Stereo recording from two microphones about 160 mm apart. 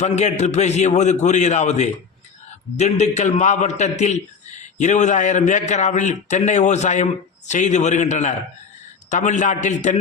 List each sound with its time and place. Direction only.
0.0 s a man's voice: 45° left (ahead or behind)